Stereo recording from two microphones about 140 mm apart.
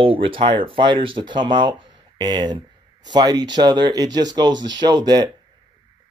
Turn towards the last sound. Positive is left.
turn(degrees=-30)  # may be behind; listen again after turning